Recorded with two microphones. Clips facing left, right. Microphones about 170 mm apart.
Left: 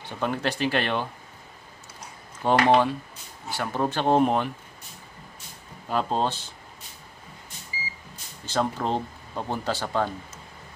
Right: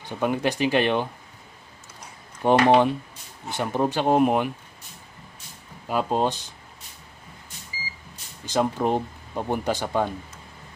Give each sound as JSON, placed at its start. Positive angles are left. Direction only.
{"t": 0.0, "sound": "speech", "side_deg": -15}
{"t": 2.4, "sound": "speech", "side_deg": -15}
{"t": 5.9, "sound": "speech", "side_deg": -10}
{"t": 8.5, "sound": "speech", "side_deg": -15}